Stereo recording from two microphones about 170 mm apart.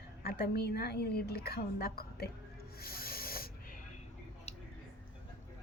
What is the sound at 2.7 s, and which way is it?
Rub, 65° left (ahead or behind).